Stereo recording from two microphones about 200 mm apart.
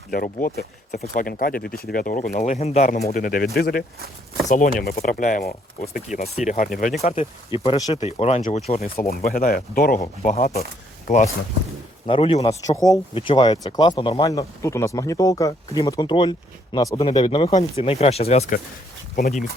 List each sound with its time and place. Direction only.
0.1 s speech: 45° left (ahead or behind)
3.1 s speech: 45° left (ahead or behind)
6.2 s speech: 35° left (ahead or behind)
9.0 s speech: 50° left (ahead or behind)
10.2 s speech: 35° left (ahead or behind)
12.0 s speech: 25° left (ahead or behind)
12.4 s speech: 15° left (ahead or behind)
19.1 s speech: 45° left (ahead or behind)